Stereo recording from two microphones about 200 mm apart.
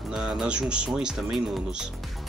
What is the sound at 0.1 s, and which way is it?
Speech, 5° right (ahead or behind).